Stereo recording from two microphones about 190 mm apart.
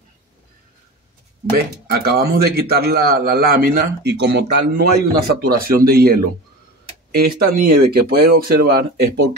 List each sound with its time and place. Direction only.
1.9 s a man's voice: 55° right (ahead or behind)